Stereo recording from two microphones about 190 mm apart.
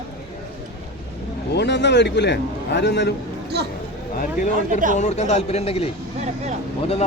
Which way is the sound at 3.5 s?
60° right (ahead or behind).